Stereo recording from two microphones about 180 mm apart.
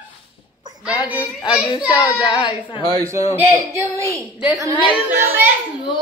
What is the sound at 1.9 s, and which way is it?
Speech, 25° left (ahead or behind).